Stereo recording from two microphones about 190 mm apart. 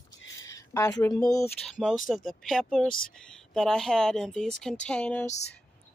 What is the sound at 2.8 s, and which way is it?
Speech, 50° left (ahead or behind).